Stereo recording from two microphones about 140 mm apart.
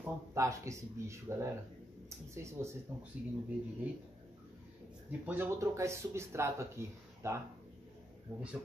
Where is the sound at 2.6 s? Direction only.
20° right (ahead or behind).